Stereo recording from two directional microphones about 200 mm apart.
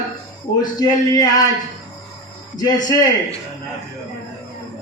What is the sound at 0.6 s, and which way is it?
Speech, 20° left (ahead or behind).